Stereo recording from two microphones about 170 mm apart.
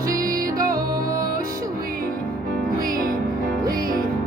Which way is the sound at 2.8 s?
55° right (ahead or behind).